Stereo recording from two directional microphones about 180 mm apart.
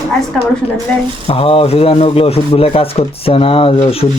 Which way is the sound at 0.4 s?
5° left (ahead or behind).